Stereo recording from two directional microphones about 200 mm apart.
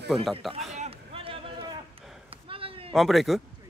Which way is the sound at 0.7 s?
30° right (ahead or behind).